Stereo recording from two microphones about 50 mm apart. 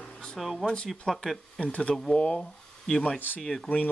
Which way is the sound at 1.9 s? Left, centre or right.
Centre.